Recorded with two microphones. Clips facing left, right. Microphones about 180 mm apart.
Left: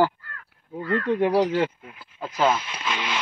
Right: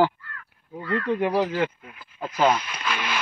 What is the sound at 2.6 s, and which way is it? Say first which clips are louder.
Speech: even; 20° left (ahead or behind).